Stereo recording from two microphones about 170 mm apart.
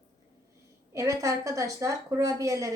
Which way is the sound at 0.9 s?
15° right (ahead or behind).